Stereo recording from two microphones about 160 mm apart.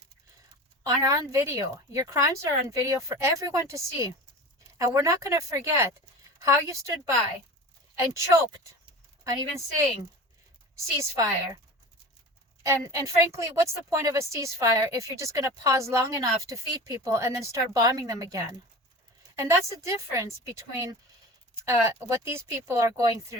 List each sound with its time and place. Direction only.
0.9 s a woman's voice: 20° right (ahead or behind)
7.9 s a woman's voice: 20° right (ahead or behind)
10.8 s a woman's voice: 20° right (ahead or behind)
12.6 s a woman's voice: 20° right (ahead or behind)